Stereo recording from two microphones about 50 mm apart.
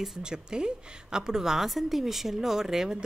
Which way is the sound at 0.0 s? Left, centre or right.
Centre.